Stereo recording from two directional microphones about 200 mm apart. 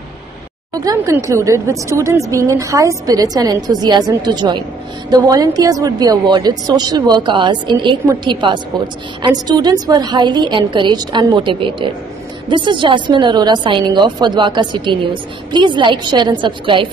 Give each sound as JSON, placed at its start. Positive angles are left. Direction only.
{"t": 0.8, "sound": "a woman's voice", "side_deg": -15}